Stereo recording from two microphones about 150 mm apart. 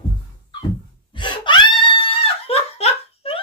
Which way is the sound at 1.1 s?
30° left (ahead or behind).